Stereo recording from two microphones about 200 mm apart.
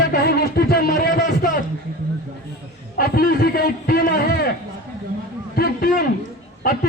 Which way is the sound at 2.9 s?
45° left (ahead or behind).